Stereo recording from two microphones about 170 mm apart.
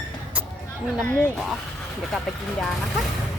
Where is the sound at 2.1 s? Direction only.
Centre (ahead or behind).